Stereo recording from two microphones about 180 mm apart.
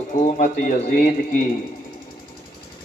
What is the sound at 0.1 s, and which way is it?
Speech, 45° left (ahead or behind).